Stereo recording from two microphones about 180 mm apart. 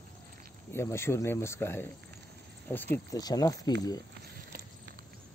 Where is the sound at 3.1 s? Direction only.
20° left (ahead or behind).